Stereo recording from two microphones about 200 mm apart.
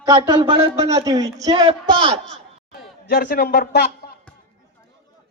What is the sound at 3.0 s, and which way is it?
A man's voice, 50° left (ahead or behind).